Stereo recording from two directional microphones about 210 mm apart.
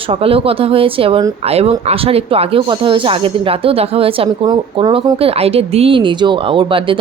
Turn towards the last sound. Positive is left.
turn(degrees=-25)  # may be behind; listen again after turning